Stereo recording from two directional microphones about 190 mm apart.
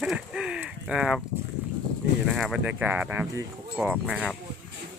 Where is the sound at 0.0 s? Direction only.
5° right (ahead or behind).